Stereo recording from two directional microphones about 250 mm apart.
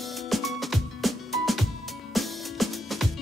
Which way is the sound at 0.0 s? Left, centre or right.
Centre.